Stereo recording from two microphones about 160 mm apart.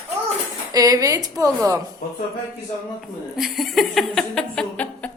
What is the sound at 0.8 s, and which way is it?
Speech, 20° right (ahead or behind).